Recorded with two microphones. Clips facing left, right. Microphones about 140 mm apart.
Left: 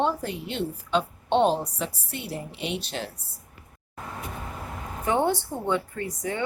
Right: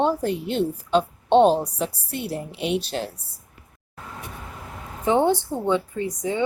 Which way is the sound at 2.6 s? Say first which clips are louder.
Right 8 dB; 5° right (ahead or behind).